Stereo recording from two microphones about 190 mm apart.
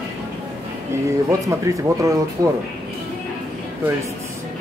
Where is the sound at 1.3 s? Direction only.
15° right (ahead or behind).